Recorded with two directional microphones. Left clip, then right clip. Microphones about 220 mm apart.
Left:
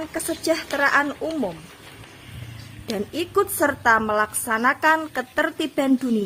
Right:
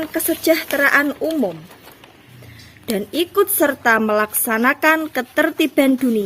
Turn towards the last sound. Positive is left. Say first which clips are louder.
# right 6 dB
turn(degrees=-45)  # may be behind; listen again after turning